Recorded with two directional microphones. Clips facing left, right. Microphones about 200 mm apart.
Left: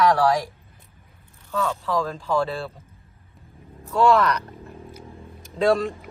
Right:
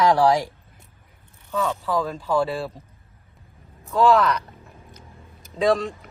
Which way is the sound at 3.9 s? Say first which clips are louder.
Right 1 dB; centre (ahead or behind).